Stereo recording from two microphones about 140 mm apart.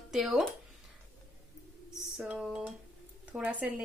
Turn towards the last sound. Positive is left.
turn(degrees=-10)  # may be behind; listen again after turning